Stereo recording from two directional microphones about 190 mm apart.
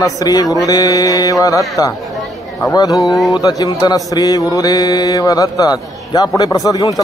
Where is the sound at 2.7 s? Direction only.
20° left (ahead or behind).